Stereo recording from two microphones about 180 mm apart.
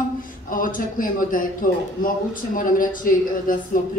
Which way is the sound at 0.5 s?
50° left (ahead or behind).